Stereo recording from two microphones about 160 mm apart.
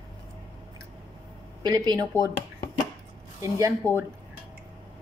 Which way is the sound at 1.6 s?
25° right (ahead or behind).